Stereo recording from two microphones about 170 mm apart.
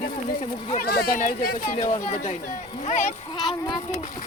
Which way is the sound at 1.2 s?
55° left (ahead or behind).